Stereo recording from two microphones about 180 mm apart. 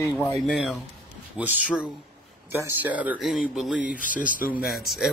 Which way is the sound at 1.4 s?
5° right (ahead or behind).